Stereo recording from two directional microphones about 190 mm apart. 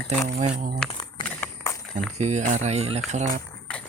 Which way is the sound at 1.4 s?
15° left (ahead or behind).